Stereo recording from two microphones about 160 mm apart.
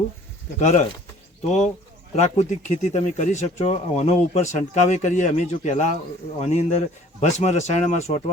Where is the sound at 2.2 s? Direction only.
45° left (ahead or behind).